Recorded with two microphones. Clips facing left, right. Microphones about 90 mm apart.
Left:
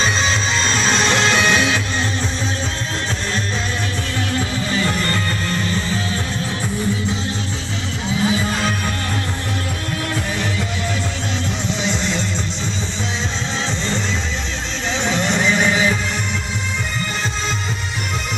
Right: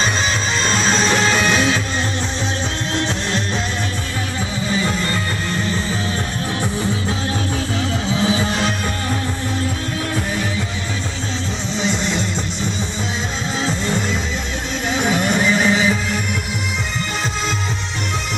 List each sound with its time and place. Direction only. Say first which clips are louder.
0.3 s music: even; 50° right (ahead or behind)
1.0 s music: left 2 dB; 15° right (ahead or behind)
4.6 s music: right 3 dB; 15° right (ahead or behind)
11.8 s music: right 3 dB; centre (ahead or behind)
13.7 s music: right 4 dB; 10° right (ahead or behind)